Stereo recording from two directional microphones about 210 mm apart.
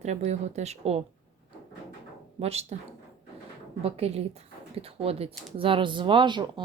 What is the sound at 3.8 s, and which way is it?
Speech, 30° right (ahead or behind).